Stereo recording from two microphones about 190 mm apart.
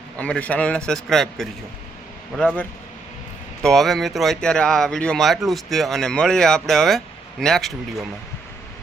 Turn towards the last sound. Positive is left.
turn(degrees=0)  # may be behind; listen again after turning